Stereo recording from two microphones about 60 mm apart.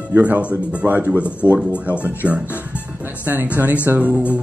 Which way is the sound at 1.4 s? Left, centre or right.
Right.